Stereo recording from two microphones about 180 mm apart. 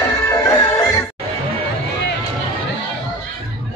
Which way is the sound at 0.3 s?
15° left (ahead or behind).